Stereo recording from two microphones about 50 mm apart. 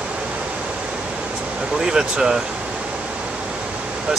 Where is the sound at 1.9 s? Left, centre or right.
Centre.